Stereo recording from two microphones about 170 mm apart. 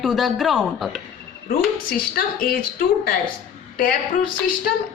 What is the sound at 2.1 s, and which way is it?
A woman's voice, 60° left (ahead or behind).